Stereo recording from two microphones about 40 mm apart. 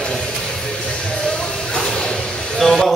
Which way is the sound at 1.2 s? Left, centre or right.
Centre.